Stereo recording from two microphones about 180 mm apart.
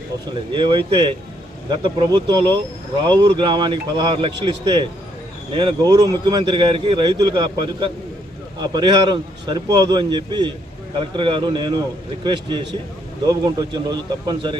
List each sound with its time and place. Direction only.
0.5 s speech: 25° right (ahead or behind)